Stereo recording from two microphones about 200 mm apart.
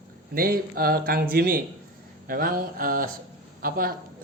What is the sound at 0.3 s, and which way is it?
Speech, 45° right (ahead or behind).